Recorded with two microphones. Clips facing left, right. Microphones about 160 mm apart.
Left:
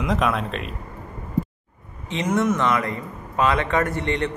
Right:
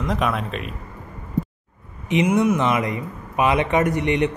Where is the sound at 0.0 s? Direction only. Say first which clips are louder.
Left 1 dB; centre (ahead or behind).